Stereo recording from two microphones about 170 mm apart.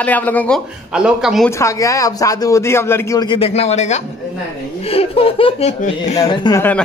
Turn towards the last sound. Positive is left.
turn(degrees=10)  # may be behind; listen again after turning